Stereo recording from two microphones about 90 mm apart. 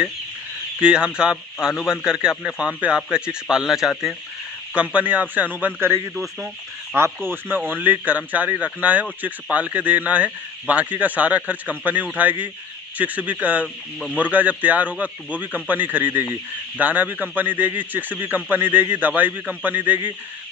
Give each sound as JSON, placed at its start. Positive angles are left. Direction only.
{"t": 0.7, "sound": "speech", "side_deg": -10}
{"t": 4.7, "sound": "a man's voice", "side_deg": -20}